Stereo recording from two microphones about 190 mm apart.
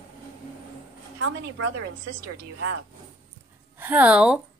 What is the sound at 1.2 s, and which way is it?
Speech, 90° right.